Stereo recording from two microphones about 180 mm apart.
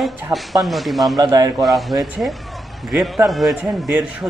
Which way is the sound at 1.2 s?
20° right (ahead or behind).